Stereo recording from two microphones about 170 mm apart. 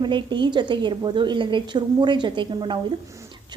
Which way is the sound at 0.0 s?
25° right (ahead or behind).